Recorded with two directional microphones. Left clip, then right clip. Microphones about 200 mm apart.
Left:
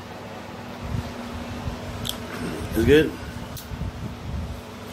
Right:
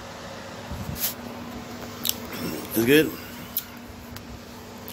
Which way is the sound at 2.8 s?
10° right (ahead or behind).